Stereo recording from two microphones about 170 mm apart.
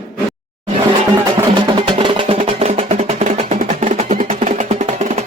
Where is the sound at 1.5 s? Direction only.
30° right (ahead or behind).